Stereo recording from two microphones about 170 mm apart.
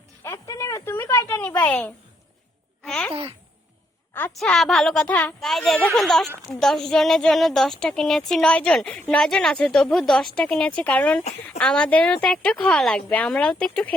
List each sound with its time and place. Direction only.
0.2 s a sound: 15° left (ahead or behind)
2.8 s a woman's voice: 5° left (ahead or behind)
3.1 s speech: 35° right (ahead or behind)
4.4 s a woman's voice: centre (ahead or behind)